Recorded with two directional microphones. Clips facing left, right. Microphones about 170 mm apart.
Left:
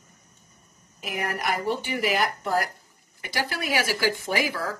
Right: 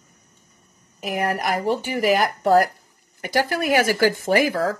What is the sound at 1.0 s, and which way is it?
Speech, 50° right (ahead or behind).